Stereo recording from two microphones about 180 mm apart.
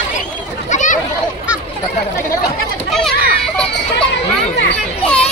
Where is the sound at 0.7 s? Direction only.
45° left (ahead or behind).